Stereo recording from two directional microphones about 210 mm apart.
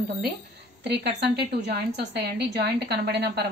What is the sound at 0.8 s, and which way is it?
A woman's voice, 55° right (ahead or behind).